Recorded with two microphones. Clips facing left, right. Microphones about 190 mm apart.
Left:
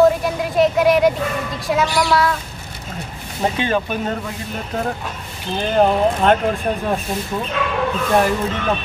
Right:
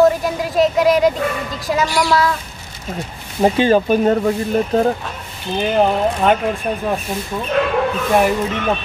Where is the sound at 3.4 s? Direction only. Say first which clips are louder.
Right 6 dB; 35° right (ahead or behind).